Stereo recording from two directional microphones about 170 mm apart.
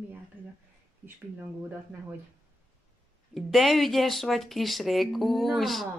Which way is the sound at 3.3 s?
Centre (ahead or behind).